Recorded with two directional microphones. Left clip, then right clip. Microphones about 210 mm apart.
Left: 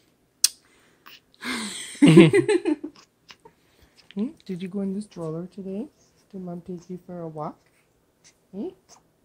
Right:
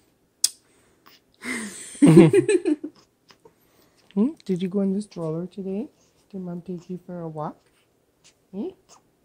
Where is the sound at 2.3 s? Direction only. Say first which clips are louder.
Right 1 dB; 15° left (ahead or behind).